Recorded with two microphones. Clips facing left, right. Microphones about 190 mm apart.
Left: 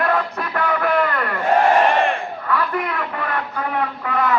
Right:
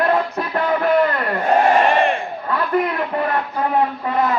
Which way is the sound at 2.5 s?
30° right (ahead or behind).